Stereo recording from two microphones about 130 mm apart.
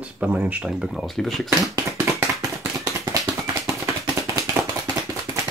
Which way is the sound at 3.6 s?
25° right (ahead or behind).